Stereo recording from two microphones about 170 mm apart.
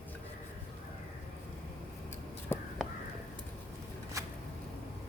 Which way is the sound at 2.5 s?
15° left (ahead or behind).